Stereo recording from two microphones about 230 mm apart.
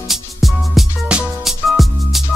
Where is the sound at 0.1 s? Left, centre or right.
Centre.